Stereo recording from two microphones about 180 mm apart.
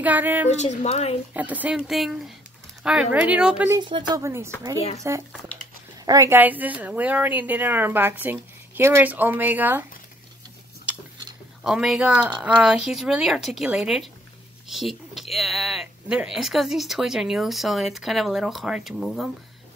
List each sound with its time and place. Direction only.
0.0 s a woman's voice: 10° right (ahead or behind)
0.6 s speech: 35° left (ahead or behind)
1.3 s speech: 10° right (ahead or behind)
3.8 s a woman's voice: 25° right (ahead or behind)
4.3 s a woman's voice: 15° right (ahead or behind)
11.6 s speech: centre (ahead or behind)